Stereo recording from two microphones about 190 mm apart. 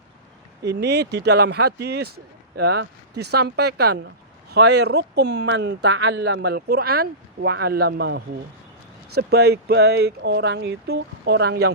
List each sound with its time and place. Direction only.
0.6 s speech: 60° right (ahead or behind)